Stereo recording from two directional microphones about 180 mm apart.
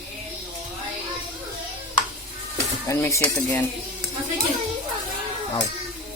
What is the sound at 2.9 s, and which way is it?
Cutlery, 15° left (ahead or behind).